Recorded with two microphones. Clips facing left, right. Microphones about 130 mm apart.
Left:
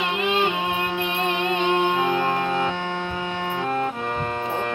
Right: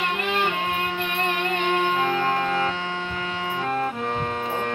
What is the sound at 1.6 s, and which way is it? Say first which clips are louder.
Music: left 1 dB; 20° left (ahead or behind).